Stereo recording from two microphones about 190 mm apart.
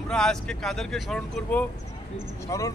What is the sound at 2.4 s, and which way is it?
Speech, 15° left (ahead or behind).